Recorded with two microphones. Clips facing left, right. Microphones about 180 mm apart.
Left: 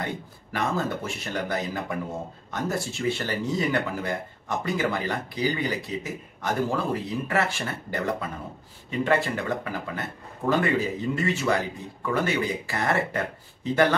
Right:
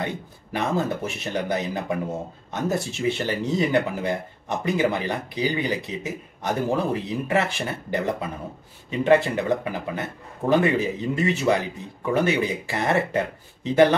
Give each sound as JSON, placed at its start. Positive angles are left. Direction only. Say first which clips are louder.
{"t": 0.0, "sound": "a man's voice", "louder": "right 3 dB", "side_deg": -20}